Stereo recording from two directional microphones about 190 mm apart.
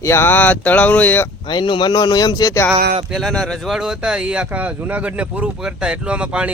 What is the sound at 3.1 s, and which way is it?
Speech, centre (ahead or behind).